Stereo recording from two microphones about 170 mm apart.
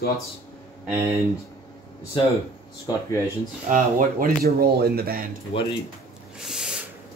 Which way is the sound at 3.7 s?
55° right (ahead or behind).